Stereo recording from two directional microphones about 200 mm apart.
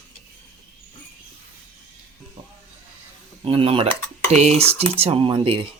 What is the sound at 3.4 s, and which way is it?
Speech, 25° right (ahead or behind).